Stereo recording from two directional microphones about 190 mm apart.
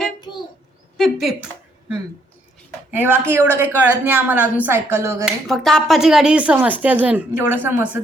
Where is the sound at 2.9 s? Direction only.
10° right (ahead or behind).